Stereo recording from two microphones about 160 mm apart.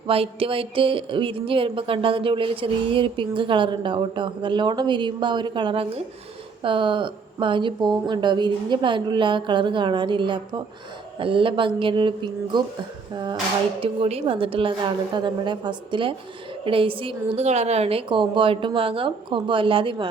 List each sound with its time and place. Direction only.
0.1 s a woman's voice: 35° right (ahead or behind)
13.8 s a woman's voice: 35° right (ahead or behind)